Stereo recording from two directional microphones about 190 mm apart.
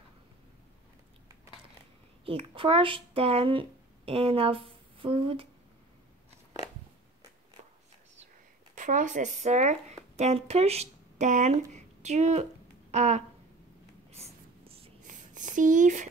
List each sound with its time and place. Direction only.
2.2 s speech: 30° right (ahead or behind)
7.6 s whispering: 40° right (ahead or behind)
8.7 s speech: 40° right (ahead or behind)
12.9 s a sound: 35° right (ahead or behind)
14.1 s whispering: 30° right (ahead or behind)
15.0 s a sound: 40° right (ahead or behind)